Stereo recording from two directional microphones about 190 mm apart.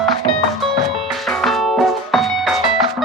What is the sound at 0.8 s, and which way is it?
Music, centre (ahead or behind).